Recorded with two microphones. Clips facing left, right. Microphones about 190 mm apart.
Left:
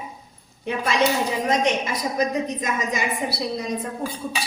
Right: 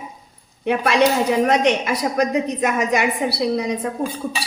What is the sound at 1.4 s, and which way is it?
A woman's voice, 65° right (ahead or behind).